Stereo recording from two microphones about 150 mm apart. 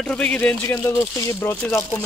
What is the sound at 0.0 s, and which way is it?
Speech, 5° left (ahead or behind).